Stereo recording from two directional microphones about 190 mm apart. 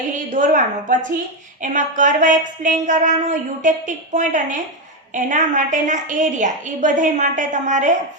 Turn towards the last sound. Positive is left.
turn(degrees=-40)  # may be behind; listen again after turning